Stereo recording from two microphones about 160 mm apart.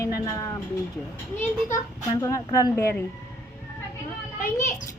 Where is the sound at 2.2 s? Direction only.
20° left (ahead or behind).